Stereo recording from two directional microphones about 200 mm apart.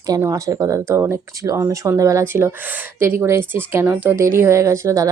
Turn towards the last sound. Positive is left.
turn(degrees=-15)  # may be behind; listen again after turning